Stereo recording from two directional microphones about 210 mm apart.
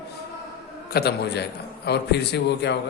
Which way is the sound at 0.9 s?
50° left (ahead or behind).